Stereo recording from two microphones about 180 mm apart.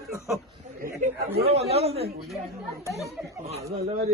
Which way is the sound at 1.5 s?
35° right (ahead or behind).